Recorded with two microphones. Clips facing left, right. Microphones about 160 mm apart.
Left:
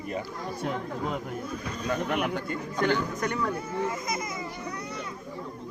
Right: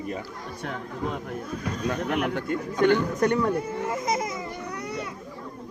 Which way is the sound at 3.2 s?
30° right (ahead or behind).